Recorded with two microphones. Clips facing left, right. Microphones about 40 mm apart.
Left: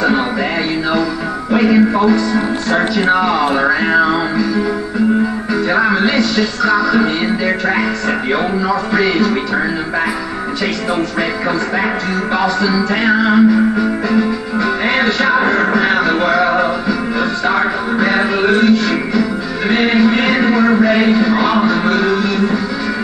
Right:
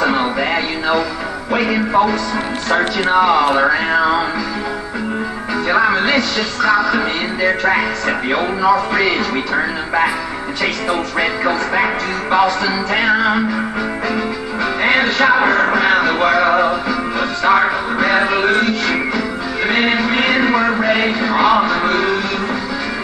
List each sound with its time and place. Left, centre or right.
1.5 s music: centre
3.2 s music: right
3.9 s music: centre
5.7 s music: centre
8.3 s music: centre
11.1 s music: centre
17.5 s a sound: centre
18.6 s music: right
19.7 s music: centre
20.1 s a sound: centre